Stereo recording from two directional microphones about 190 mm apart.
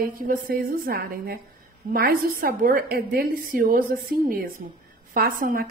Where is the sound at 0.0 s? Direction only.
50° right (ahead or behind).